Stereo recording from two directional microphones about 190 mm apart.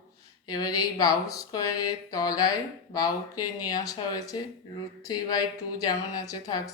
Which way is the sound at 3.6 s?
20° left (ahead or behind).